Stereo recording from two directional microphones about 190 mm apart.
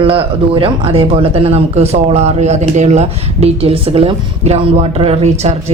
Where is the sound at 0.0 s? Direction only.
30° right (ahead or behind).